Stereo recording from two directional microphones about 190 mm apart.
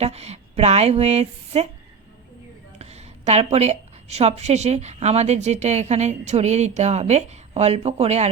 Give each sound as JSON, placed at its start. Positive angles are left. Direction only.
{"t": 0.0, "sound": "a woman's voice", "side_deg": -35}
{"t": 2.7, "sound": "a woman's voice", "side_deg": -35}